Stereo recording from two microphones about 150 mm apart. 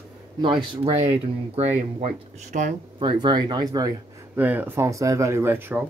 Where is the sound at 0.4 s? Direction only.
30° right (ahead or behind).